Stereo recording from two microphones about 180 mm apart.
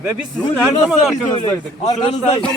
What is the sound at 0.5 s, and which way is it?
Speech, 5° right (ahead or behind).